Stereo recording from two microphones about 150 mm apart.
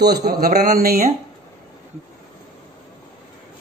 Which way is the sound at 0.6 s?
90° right.